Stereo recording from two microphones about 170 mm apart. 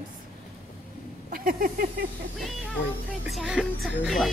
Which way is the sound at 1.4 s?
55° right (ahead or behind).